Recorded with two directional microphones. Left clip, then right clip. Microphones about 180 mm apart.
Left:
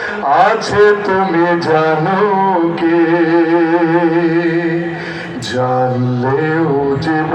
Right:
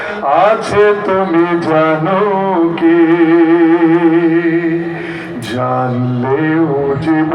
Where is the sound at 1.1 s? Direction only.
60° right (ahead or behind).